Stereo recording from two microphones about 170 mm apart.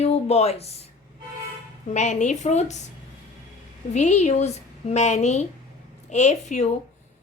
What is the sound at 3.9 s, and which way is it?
A woman's voice, 40° left (ahead or behind).